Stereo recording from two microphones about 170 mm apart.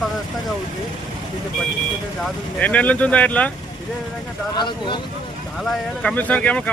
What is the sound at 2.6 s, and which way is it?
Speech, 10° left (ahead or behind).